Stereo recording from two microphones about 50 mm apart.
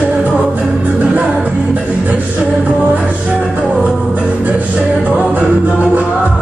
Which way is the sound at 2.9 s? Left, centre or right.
Right.